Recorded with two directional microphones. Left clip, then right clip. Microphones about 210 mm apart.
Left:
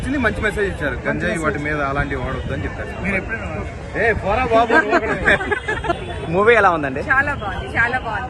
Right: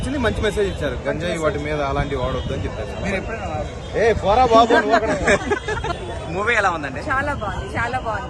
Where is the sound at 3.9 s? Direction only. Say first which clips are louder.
Right 2 dB; 25° right (ahead or behind).